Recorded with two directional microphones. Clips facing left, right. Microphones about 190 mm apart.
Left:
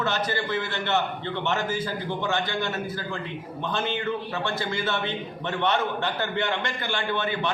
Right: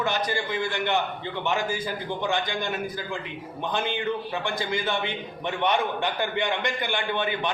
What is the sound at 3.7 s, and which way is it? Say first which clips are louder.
A man's voice: even; 15° right (ahead or behind).